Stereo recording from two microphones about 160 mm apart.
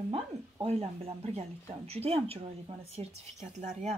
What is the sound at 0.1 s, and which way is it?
A woman's voice, 40° right (ahead or behind).